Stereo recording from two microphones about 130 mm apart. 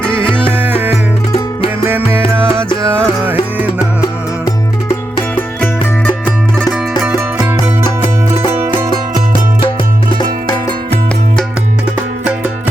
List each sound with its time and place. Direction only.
0.1 s music: 40° left (ahead or behind)
0.5 s music: 15° right (ahead or behind)